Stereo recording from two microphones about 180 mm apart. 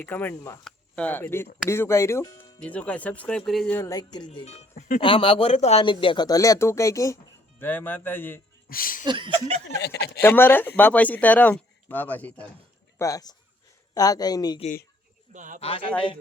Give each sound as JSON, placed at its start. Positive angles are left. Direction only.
{"t": 0.0, "sound": "speech", "side_deg": 10}
{"t": 3.8, "sound": "speech", "side_deg": 20}
{"t": 4.3, "sound": "speech", "side_deg": 35}
{"t": 5.0, "sound": "speech", "side_deg": 30}
{"t": 8.7, "sound": "speech", "side_deg": 50}
{"t": 9.0, "sound": "speech", "side_deg": -25}
{"t": 9.6, "sound": "speech", "side_deg": 70}
{"t": 10.2, "sound": "speech", "side_deg": 10}
{"t": 13.0, "sound": "speech", "side_deg": 20}
{"t": 15.3, "sound": "speech", "side_deg": -45}
{"t": 15.6, "sound": "speech", "side_deg": 30}